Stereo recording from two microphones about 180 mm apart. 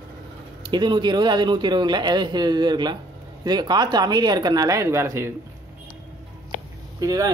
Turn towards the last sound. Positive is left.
turn(degrees=-20)  # may be behind; listen again after turning